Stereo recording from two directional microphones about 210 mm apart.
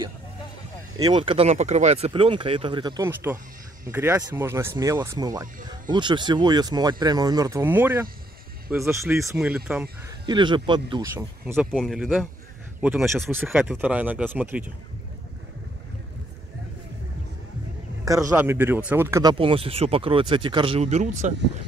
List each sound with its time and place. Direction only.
1.0 s speech: 25° right (ahead or behind)
10.2 s speech: 20° right (ahead or behind)
11.7 s speech: centre (ahead or behind)
18.0 s speech: 15° right (ahead or behind)
19.3 s speech: 25° right (ahead or behind)